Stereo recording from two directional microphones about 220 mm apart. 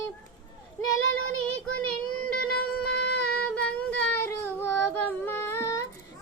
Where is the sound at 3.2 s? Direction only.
5° left (ahead or behind).